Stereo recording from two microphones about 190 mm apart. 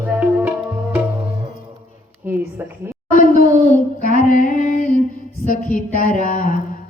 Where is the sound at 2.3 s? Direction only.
10° right (ahead or behind).